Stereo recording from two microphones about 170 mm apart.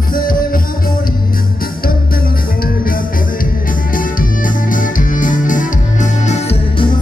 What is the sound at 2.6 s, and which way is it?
Music, 55° left (ahead or behind).